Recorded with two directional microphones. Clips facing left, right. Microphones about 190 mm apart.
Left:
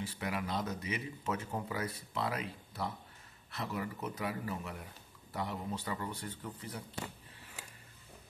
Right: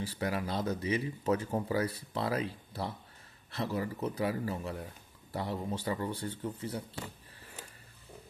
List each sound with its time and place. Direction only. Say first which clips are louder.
0.0 s speech: right 4 dB; 35° right (ahead or behind)